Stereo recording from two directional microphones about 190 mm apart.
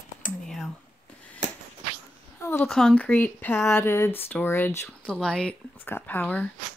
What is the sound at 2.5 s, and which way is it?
Speech, 5° left (ahead or behind).